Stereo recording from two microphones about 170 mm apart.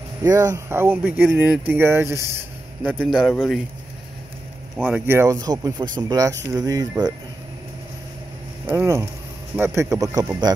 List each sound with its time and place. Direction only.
0.2 s speech: 20° right (ahead or behind)
3.0 s a man's voice: centre (ahead or behind)
4.8 s speech: 10° right (ahead or behind)
8.6 s speech: 15° right (ahead or behind)